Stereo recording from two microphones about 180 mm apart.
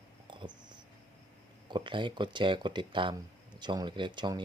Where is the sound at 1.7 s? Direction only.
25° right (ahead or behind).